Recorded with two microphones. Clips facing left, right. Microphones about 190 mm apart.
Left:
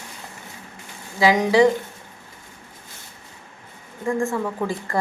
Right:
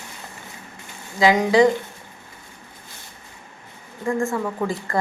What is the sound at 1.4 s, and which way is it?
Speech, 10° left (ahead or behind).